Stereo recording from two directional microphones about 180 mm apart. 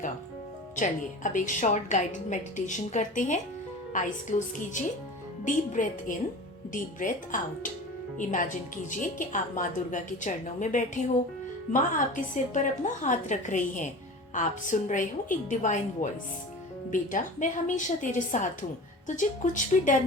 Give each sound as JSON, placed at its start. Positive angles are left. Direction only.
{"t": 0.8, "sound": "speech", "side_deg": 45}